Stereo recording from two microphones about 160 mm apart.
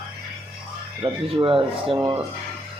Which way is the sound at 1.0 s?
35° right (ahead or behind).